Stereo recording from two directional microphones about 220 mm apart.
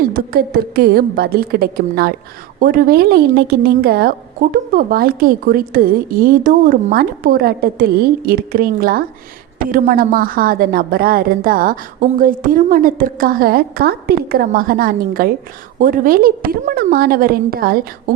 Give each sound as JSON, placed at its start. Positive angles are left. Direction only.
{"t": 0.1, "sound": "a woman's voice", "side_deg": -40}